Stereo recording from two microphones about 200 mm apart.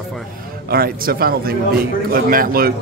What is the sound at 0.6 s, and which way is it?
A man's voice, 50° right (ahead or behind).